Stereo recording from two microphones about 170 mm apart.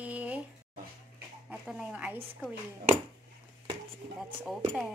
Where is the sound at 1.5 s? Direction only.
5° right (ahead or behind).